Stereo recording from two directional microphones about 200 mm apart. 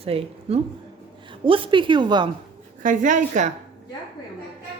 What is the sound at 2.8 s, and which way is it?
Speech, 40° right (ahead or behind).